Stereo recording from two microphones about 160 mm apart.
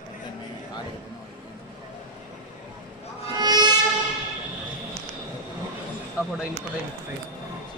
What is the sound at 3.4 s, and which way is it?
Music, 25° right (ahead or behind).